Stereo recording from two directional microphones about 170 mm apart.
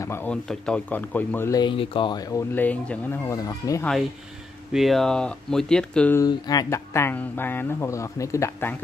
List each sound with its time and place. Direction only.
0.0 s speech: 15° left (ahead or behind)
1.6 s speech: 30° left (ahead or behind); by 3.2 s 10° left (ahead or behind)
3.3 s speech: 20° left (ahead or behind)
4.7 s speech: centre (ahead or behind)
6.1 s speech: 25° left (ahead or behind)